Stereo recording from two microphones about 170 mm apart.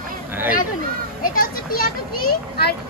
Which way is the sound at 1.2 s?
55° left (ahead or behind).